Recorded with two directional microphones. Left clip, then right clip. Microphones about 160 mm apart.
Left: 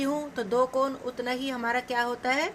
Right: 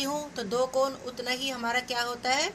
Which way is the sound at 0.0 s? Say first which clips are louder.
Left 2 dB; 55° left (ahead or behind).